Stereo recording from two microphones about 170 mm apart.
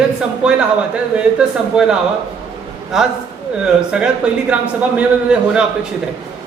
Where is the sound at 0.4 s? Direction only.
5° right (ahead or behind).